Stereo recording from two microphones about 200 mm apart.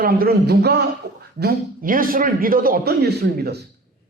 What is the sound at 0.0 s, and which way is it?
A man's voice, 45° right (ahead or behind).